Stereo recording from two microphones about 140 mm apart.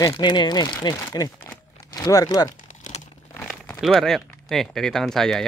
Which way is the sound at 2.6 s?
65° left (ahead or behind).